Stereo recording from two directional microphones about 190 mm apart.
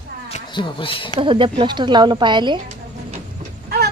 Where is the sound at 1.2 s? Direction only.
25° right (ahead or behind).